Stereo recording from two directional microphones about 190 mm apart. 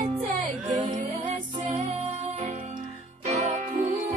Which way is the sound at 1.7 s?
30° right (ahead or behind).